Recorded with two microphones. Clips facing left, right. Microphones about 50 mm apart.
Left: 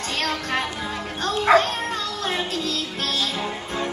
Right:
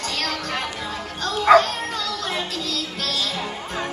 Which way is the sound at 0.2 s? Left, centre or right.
Left.